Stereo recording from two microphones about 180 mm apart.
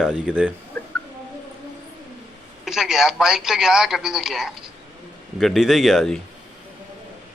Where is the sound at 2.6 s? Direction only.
5° right (ahead or behind).